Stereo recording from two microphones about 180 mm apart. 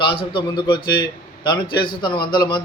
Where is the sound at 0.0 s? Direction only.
30° left (ahead or behind).